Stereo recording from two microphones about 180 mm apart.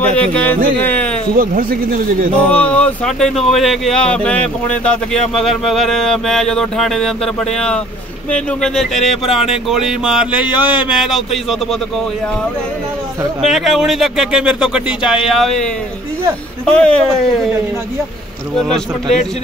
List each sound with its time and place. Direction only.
0.1 s music: 5° left (ahead or behind)
1.3 s a man's voice: 50° right (ahead or behind)
2.5 s speech: 10° left (ahead or behind)
13.4 s speech: centre (ahead or behind)